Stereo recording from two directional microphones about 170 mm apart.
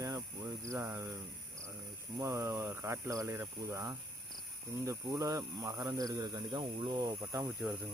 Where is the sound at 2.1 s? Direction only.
20° right (ahead or behind).